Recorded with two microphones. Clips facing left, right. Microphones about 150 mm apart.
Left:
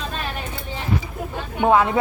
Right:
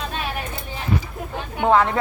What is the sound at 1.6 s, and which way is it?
Speech, 15° left (ahead or behind).